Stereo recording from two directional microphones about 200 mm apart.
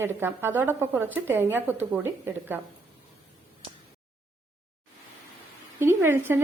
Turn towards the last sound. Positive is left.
turn(degrees=-10)  # may be behind; listen again after turning